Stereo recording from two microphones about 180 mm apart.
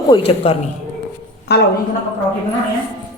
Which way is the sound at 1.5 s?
65° left (ahead or behind).